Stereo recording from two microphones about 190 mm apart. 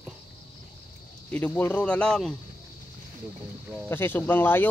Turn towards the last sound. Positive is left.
turn(degrees=10)  # may be behind; listen again after turning